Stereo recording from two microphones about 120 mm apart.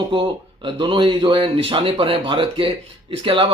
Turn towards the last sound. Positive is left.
turn(degrees=-50)  # may be behind; listen again after turning